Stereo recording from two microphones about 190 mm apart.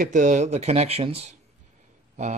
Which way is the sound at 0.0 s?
40° right (ahead or behind).